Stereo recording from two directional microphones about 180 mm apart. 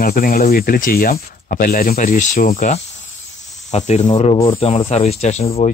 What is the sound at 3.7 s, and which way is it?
Speech, 35° left (ahead or behind).